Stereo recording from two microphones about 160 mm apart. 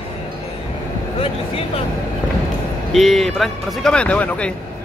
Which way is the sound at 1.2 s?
35° left (ahead or behind).